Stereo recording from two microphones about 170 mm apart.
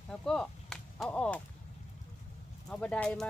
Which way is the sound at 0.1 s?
5° left (ahead or behind).